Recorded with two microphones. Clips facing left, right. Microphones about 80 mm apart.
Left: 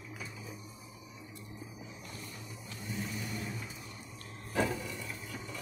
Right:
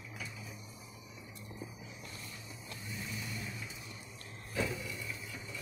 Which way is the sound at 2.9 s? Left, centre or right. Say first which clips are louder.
Left 4 dB; left.